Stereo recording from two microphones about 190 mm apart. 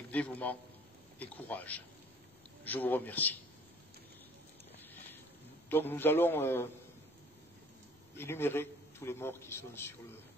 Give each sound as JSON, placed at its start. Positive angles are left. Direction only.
{"t": 0.1, "sound": "a man's voice", "side_deg": 10}
{"t": 5.7, "sound": "a man's voice", "side_deg": 10}
{"t": 8.2, "sound": "a man's voice", "side_deg": 10}